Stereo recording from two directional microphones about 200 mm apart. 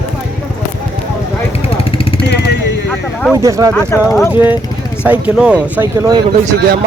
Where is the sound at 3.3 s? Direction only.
15° right (ahead or behind).